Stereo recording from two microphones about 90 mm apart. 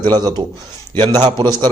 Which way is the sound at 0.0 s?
50° right (ahead or behind).